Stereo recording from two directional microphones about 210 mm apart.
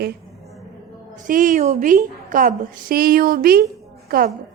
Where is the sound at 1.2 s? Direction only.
40° right (ahead or behind).